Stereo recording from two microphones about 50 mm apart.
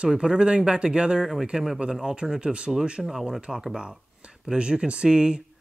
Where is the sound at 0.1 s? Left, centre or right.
Centre.